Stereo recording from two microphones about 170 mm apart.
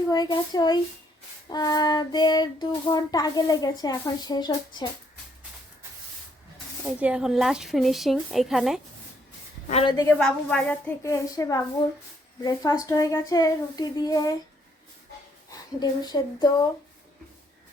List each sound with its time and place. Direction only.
0.1 s child singing: 25° left (ahead or behind)
6.8 s a woman's voice: 5° right (ahead or behind)
9.8 s child singing: 20° left (ahead or behind)
10.2 s a woman's voice: 5° left (ahead or behind)
12.4 s child singing: 20° left (ahead or behind)
15.8 s child singing: 25° left (ahead or behind)